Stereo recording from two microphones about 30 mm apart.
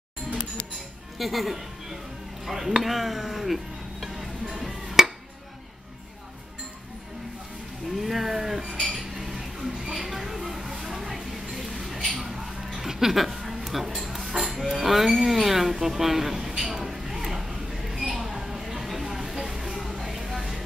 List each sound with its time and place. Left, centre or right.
1.1 s speech: centre
2.8 s music: centre
7.9 s speech: centre
8.9 s cutlery: centre
9.9 s a sound: centre
12.7 s dishes: centre
16.9 s a sound: centre
19.9 s a sound: centre
20.2 s vehicle: centre